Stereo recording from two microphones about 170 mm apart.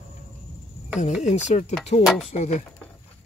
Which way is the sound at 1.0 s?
45° left (ahead or behind).